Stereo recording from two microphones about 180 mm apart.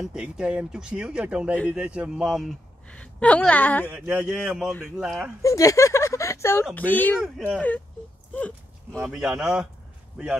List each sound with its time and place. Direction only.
0.0 s a woman's voice: 5° right (ahead or behind)
3.9 s a woman's voice: 5° right (ahead or behind)
5.4 s a woman's voice: 15° left (ahead or behind)
8.4 s a sound: 10° left (ahead or behind)
9.0 s a woman's voice: 5° right (ahead or behind)